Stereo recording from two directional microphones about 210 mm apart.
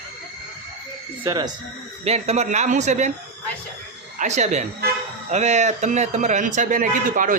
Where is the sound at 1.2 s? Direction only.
20° right (ahead or behind).